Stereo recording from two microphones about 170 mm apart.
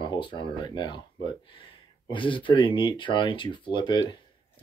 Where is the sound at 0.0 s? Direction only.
25° left (ahead or behind).